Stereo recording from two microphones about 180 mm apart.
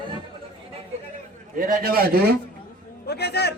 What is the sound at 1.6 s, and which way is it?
Speech, 50° right (ahead or behind).